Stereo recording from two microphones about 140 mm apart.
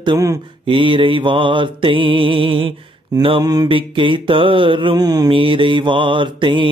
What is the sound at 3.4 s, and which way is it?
Music, 25° right (ahead or behind).